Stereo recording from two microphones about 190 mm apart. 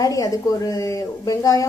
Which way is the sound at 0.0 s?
20° left (ahead or behind).